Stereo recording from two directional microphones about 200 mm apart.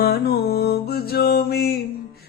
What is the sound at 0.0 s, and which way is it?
Music, 55° left (ahead or behind).